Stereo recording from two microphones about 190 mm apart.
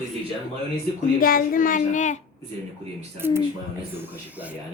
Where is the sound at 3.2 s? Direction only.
10° right (ahead or behind).